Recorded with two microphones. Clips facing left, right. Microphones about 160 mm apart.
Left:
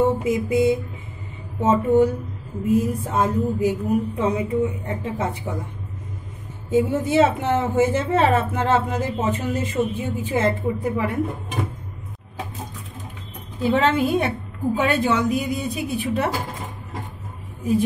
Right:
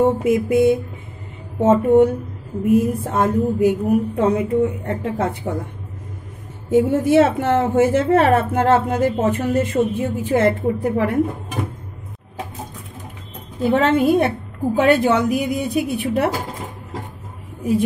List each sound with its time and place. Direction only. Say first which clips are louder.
0.2 s a woman's voice: right 4 dB; 65° right (ahead or behind)
1.6 s a woman's voice: right 4 dB; 55° right (ahead or behind)
6.7 s a woman's voice: right 5 dB; 65° right (ahead or behind)
13.6 s a woman's voice: right 3 dB; 55° right (ahead or behind)
14.8 s a woman's voice: right 6 dB; 65° right (ahead or behind)